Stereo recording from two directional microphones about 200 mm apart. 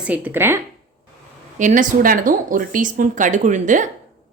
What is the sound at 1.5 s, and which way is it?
Speech, 40° right (ahead or behind).